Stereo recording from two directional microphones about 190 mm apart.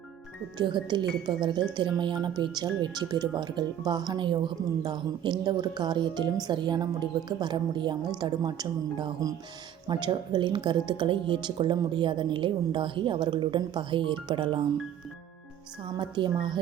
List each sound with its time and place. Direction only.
0.6 s speech: 25° right (ahead or behind)
16.0 s speech: 25° right (ahead or behind)